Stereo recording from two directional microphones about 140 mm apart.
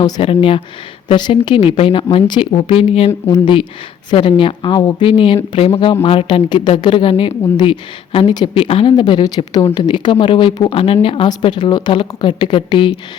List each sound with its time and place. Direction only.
0.2 s speech: 40° left (ahead or behind)
3.1 s speech: 25° left (ahead or behind)